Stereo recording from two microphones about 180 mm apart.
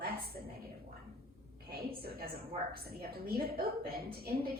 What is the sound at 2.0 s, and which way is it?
A woman's voice, 55° right (ahead or behind).